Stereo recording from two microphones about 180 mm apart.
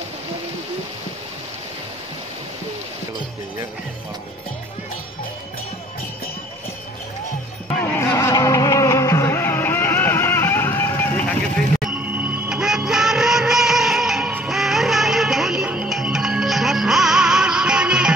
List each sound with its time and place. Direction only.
7.9 s music: 15° left (ahead or behind)
11.8 s music: 5° right (ahead or behind)